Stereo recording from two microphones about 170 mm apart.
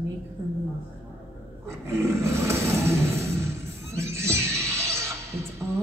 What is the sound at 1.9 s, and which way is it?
Roar, 15° right (ahead or behind).